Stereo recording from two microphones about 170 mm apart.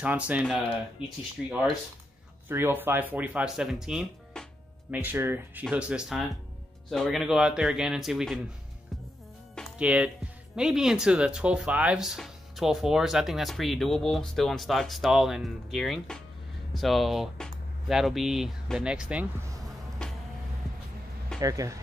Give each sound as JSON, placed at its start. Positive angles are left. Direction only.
{"t": 0.0, "sound": "speech", "side_deg": -10}
{"t": 2.4, "sound": "speech", "side_deg": -15}
{"t": 4.9, "sound": "speech", "side_deg": -10}
{"t": 9.8, "sound": "speech", "side_deg": -5}
{"t": 21.4, "sound": "speech", "side_deg": -20}